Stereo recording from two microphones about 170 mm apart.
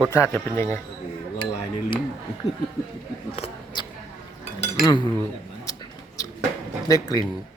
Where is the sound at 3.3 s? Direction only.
35° left (ahead or behind).